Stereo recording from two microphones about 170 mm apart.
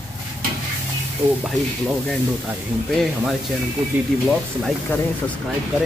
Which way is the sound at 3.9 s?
10° right (ahead or behind).